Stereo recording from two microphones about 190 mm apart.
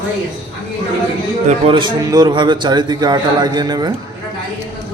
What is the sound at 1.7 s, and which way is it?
A man's voice, 25° right (ahead or behind).